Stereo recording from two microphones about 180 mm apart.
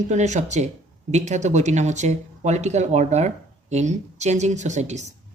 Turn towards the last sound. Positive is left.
turn(degrees=-40)  # may be behind; listen again after turning